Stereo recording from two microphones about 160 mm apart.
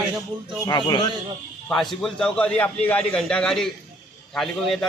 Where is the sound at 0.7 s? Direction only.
25° left (ahead or behind).